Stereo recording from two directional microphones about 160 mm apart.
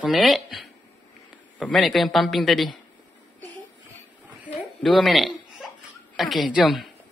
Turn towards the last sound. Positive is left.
turn(degrees=0)  # may be behind; listen again after turning